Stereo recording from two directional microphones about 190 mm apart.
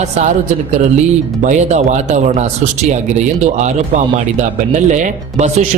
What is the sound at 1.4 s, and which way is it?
Speech, 40° right (ahead or behind).